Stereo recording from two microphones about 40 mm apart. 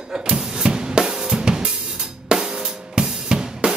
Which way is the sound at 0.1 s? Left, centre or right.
Right.